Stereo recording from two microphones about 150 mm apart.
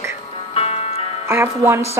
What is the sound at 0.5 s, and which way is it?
Music, 45° left (ahead or behind).